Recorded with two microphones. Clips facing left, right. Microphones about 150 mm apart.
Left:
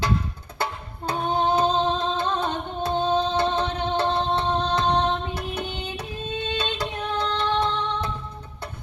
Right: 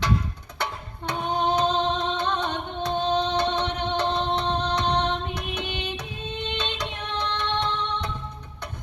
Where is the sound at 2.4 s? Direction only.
55° left (ahead or behind).